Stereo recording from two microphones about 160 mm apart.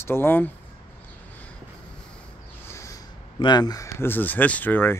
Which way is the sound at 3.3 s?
25° left (ahead or behind).